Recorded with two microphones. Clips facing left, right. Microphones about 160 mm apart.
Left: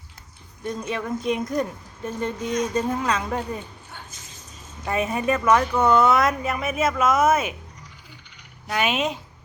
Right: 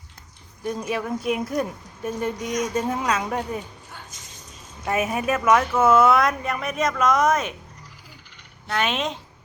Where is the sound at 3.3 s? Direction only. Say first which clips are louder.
Right 1 dB; 5° right (ahead or behind).